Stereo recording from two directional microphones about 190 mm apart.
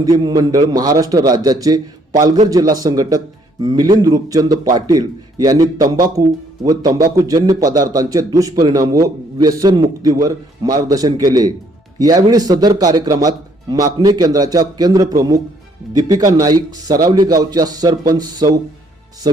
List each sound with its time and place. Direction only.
0.0 s a man's voice: 20° right (ahead or behind)